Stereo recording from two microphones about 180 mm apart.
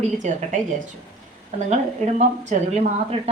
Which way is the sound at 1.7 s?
40° right (ahead or behind).